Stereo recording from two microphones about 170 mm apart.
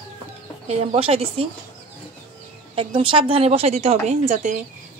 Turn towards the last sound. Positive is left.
turn(degrees=-45)  # may be behind; listen again after turning